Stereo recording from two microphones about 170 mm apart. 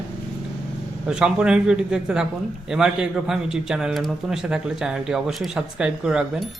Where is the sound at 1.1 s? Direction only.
5° right (ahead or behind).